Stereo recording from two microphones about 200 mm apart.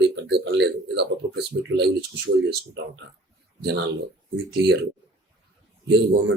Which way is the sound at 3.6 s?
55° right (ahead or behind).